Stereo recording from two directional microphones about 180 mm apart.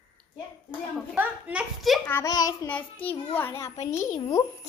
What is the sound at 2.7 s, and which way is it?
A child's voice, 10° left (ahead or behind).